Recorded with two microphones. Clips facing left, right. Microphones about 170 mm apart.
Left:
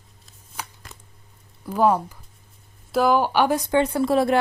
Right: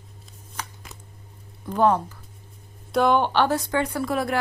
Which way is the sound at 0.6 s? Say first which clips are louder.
Even; 10° left (ahead or behind).